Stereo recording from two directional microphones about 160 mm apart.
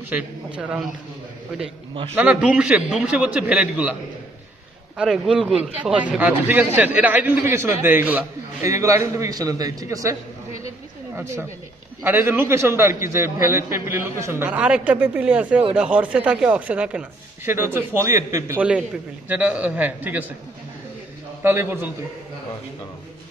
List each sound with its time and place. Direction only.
0.1 s a man's voice: 5° right (ahead or behind)
2.1 s a man's voice: 5° right (ahead or behind)
4.9 s a man's voice: 5° right (ahead or behind); by 10.1 s 20° right (ahead or behind)
11.1 s a man's voice: 15° right (ahead or behind)
21.4 s a man's voice: 10° right (ahead or behind)